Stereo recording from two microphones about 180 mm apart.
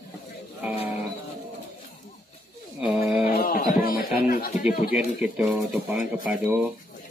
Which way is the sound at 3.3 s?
55° left (ahead or behind).